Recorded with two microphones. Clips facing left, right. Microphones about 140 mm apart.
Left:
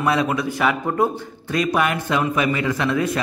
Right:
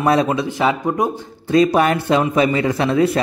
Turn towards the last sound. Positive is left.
turn(degrees=-35)  # may be behind; listen again after turning